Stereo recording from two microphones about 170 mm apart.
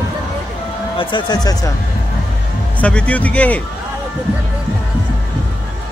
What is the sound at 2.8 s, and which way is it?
Speech, 5° left (ahead or behind).